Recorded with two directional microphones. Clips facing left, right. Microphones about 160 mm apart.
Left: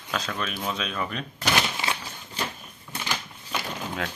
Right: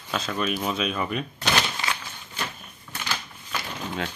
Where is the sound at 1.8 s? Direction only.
25° left (ahead or behind).